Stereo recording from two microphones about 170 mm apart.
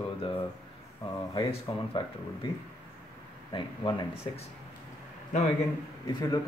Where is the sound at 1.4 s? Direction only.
30° left (ahead or behind).